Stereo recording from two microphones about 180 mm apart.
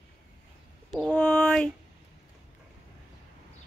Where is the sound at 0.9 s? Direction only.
5° left (ahead or behind).